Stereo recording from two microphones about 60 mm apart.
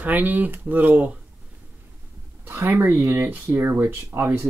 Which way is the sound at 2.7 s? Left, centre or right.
Right.